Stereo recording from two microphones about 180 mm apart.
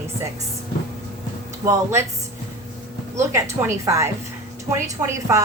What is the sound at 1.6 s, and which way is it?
Speech, 15° right (ahead or behind).